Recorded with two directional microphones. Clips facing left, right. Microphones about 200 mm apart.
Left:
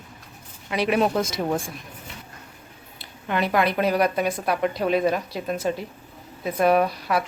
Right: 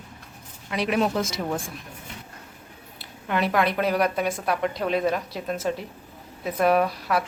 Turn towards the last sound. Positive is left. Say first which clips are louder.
# left 1 dB
turn(degrees=0)  # may be behind; listen again after turning